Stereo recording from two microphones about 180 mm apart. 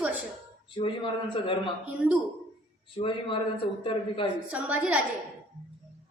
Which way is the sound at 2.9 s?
30° left (ahead or behind).